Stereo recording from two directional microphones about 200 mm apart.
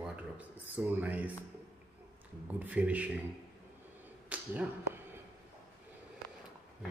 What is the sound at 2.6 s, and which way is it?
Speech, 5° right (ahead or behind).